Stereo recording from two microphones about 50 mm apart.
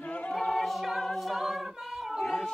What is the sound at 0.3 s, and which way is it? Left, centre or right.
A capella, centre.